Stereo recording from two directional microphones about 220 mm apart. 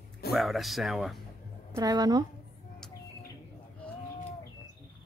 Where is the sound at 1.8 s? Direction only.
15° right (ahead or behind).